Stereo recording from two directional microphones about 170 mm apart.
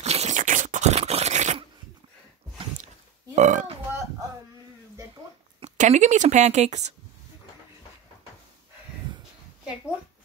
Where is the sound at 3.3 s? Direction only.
45° right (ahead or behind).